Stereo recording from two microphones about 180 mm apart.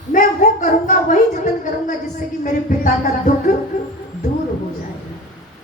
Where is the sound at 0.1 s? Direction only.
45° left (ahead or behind).